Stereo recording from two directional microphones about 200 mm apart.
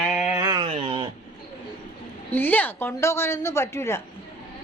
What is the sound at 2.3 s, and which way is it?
A woman's voice, 10° left (ahead or behind).